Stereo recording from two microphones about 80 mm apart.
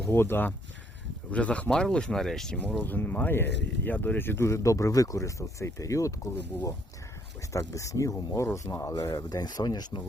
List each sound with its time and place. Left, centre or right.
0.0 s speech: left
1.3 s speech: centre
2.6 s speech: centre; by 6.1 s left
7.5 s speech: left